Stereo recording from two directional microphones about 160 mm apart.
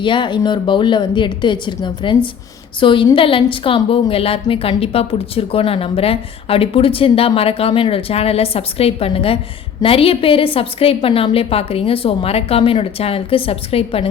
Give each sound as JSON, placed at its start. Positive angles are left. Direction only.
{"t": 0.0, "sound": "a woman's voice", "side_deg": 30}